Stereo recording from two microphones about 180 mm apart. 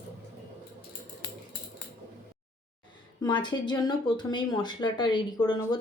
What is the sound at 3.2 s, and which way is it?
Speech, 25° left (ahead or behind).